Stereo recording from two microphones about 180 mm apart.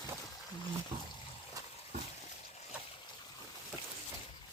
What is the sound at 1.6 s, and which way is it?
Water, 20° right (ahead or behind).